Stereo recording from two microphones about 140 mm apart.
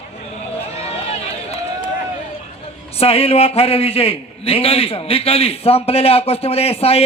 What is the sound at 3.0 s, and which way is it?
A man's voice, 45° left (ahead or behind).